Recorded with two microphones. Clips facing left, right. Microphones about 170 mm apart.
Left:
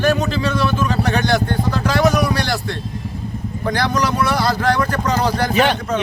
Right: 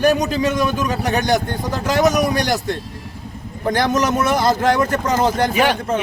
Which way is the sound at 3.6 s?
20° right (ahead or behind).